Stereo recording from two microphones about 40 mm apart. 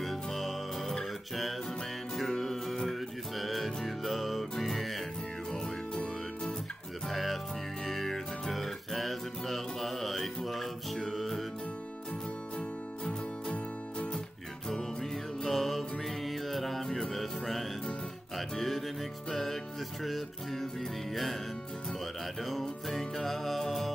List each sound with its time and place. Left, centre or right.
0.0 s music: centre
2.1 s music: centre
12.5 s music: left
14.7 s music: centre
22.4 s music: centre